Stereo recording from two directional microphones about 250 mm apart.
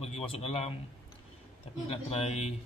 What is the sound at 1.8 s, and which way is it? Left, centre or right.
Speech, left.